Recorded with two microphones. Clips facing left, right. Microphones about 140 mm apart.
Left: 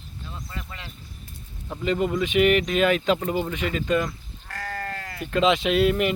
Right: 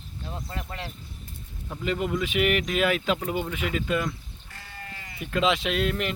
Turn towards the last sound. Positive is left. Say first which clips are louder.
# left 6 dB
turn(degrees=5)  # may be behind; listen again after turning